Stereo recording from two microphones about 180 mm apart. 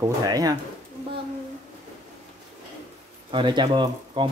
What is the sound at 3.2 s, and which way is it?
Speech, 25° right (ahead or behind).